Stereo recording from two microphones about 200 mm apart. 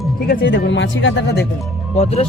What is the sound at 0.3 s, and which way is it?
Speech, 60° left (ahead or behind).